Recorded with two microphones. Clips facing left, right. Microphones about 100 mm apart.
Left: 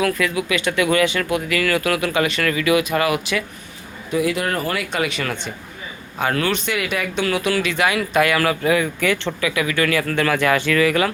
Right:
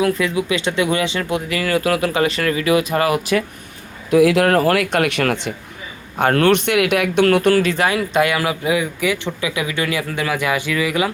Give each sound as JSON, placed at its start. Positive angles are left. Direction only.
{"t": 0.0, "sound": "speech", "side_deg": -25}
{"t": 4.1, "sound": "speech", "side_deg": -90}
{"t": 6.1, "sound": "speech", "side_deg": -60}